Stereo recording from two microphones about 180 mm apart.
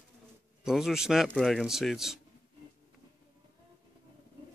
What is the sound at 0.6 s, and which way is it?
Speech, 5° right (ahead or behind).